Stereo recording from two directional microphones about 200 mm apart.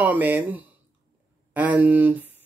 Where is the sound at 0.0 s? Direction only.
10° right (ahead or behind).